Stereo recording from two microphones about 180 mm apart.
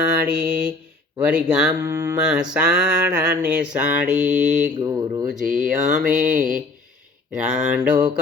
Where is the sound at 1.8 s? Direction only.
15° right (ahead or behind).